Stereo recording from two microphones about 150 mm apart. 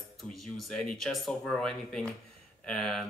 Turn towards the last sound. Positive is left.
turn(degrees=5)  # may be behind; listen again after turning